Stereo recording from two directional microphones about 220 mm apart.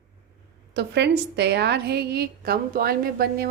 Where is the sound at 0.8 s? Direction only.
50° right (ahead or behind).